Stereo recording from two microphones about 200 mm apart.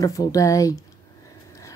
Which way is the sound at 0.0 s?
15° left (ahead or behind).